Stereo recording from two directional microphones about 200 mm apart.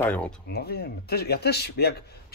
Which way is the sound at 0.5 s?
50° left (ahead or behind).